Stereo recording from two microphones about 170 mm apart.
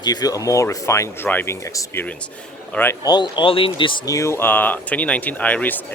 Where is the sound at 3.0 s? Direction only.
25° left (ahead or behind).